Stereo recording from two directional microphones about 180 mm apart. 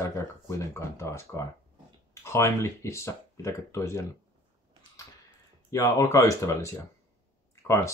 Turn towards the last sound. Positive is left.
turn(degrees=15)  # may be behind; listen again after turning